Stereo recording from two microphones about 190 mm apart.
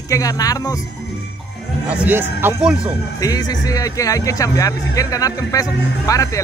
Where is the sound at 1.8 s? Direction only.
10° right (ahead or behind).